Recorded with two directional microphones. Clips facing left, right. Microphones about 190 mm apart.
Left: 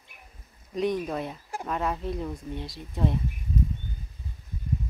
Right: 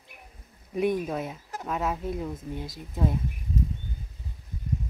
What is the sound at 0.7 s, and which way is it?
Speech, 5° right (ahead or behind).